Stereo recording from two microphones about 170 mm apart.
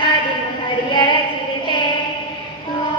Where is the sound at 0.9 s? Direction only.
25° left (ahead or behind).